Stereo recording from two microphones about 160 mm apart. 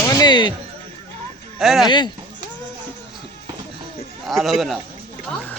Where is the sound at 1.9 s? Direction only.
30° left (ahead or behind).